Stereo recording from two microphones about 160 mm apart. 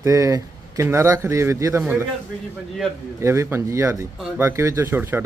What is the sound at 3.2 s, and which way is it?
Speech, 15° right (ahead or behind).